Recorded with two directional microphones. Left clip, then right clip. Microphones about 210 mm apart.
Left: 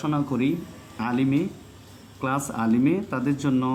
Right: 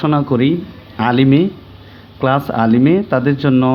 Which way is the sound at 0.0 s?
30° right (ahead or behind).